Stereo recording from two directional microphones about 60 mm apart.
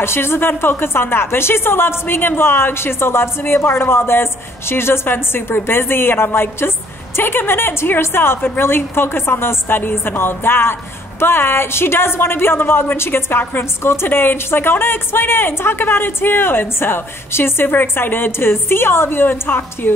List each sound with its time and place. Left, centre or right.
0.0 s a woman's voice: left